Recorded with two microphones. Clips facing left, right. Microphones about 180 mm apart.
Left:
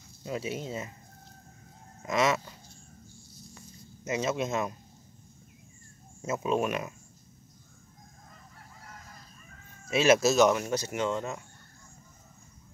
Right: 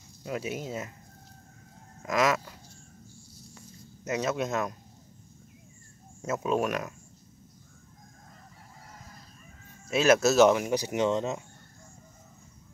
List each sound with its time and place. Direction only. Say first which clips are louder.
0.2 s speech: even; 5° right (ahead or behind)
2.0 s speech: right 1 dB; centre (ahead or behind)
4.0 s speech: right 1 dB; centre (ahead or behind)
6.2 s speech: right 1 dB; centre (ahead or behind)
9.8 s speech: even; centre (ahead or behind)
10.5 s speech: right 3 dB; 15° right (ahead or behind)